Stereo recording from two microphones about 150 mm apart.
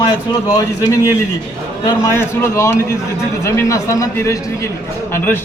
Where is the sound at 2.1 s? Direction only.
15° left (ahead or behind).